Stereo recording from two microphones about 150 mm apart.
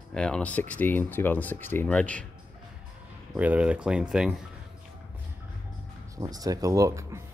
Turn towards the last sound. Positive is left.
turn(degrees=-20)  # may be behind; listen again after turning